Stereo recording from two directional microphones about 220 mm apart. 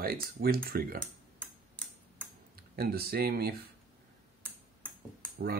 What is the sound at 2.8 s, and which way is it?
Speech, 45° right (ahead or behind).